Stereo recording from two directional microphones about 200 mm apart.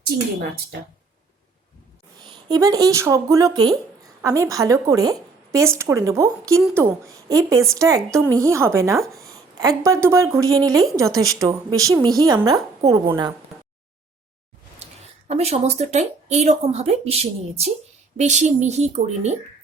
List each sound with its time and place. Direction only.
0.0 s speech: 50° right (ahead or behind)
2.2 s a woman's voice: 20° right (ahead or behind)
15.3 s speech: 30° right (ahead or behind)